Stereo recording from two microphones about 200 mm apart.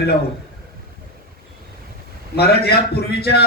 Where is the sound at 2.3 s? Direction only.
55° left (ahead or behind).